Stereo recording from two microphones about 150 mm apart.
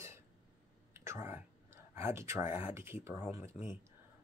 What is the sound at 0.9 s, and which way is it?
Whispering, 15° right (ahead or behind).